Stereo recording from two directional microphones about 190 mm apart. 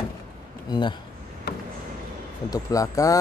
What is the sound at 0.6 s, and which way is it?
Speech, 25° left (ahead or behind).